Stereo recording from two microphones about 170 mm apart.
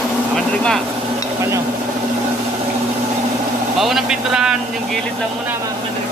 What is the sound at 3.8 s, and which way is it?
Vehicle, 5° right (ahead or behind).